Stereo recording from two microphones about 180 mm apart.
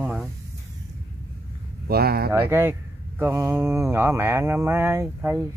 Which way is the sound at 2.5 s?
15° right (ahead or behind).